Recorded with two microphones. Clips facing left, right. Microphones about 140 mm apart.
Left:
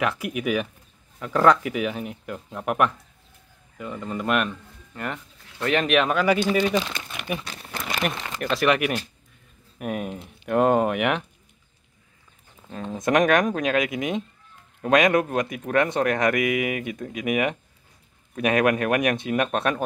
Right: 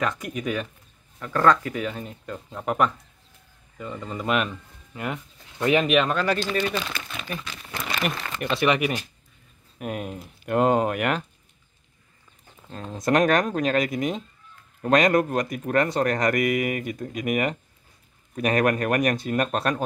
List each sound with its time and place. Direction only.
0.0 s speech: 5° left (ahead or behind)
6.8 s crumpling: 20° left (ahead or behind)
8.1 s a sound: 20° left (ahead or behind)
8.4 s speech: centre (ahead or behind)
12.8 s speech: centre (ahead or behind)